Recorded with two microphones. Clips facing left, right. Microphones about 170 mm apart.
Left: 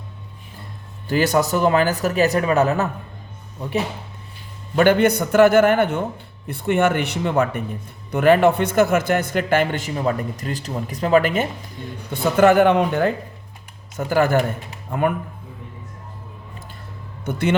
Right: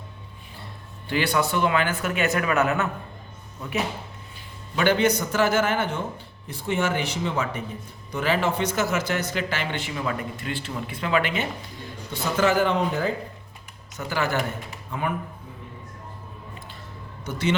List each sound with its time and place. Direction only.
1.0 s speech: 40° left (ahead or behind)
4.7 s speech: 50° left (ahead or behind)
12.1 s speech: 55° left (ahead or behind)
13.9 s speech: 50° left (ahead or behind)
17.2 s a man's voice: 55° left (ahead or behind)